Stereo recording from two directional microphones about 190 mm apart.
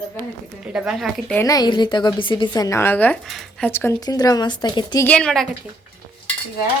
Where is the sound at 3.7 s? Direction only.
10° left (ahead or behind).